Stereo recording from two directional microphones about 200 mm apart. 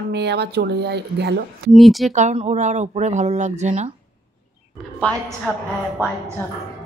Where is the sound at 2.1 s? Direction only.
30° right (ahead or behind).